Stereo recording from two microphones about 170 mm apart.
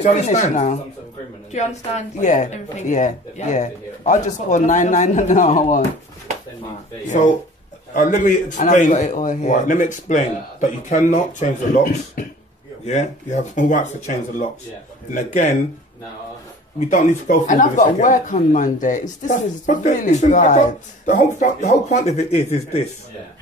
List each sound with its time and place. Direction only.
0.0 s speech: 45° left (ahead or behind)
7.9 s speech: 50° left (ahead or behind)
15.1 s speech: 45° left (ahead or behind)
16.9 s speech: 50° left (ahead or behind)